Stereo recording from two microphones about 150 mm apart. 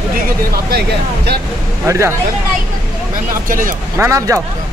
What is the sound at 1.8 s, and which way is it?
Speech, 20° right (ahead or behind).